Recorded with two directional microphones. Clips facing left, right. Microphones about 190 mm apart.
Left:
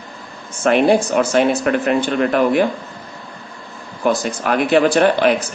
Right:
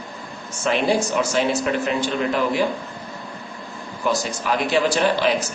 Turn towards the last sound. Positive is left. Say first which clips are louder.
# left 6 dB
turn(degrees=55)  # may be behind; listen again after turning